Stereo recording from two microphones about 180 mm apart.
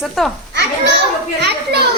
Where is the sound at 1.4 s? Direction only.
65° right (ahead or behind).